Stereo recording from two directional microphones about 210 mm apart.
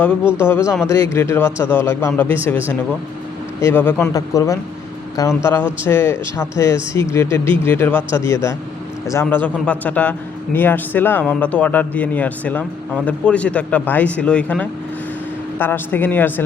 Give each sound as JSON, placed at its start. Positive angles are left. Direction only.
{"t": 0.4, "sound": "a man's voice", "side_deg": 10}
{"t": 3.6, "sound": "a man's voice", "side_deg": 10}